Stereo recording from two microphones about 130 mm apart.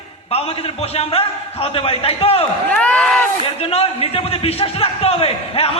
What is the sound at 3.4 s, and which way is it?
Speech, 50° left (ahead or behind).